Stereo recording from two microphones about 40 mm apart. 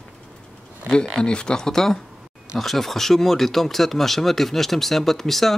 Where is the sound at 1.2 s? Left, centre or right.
Left.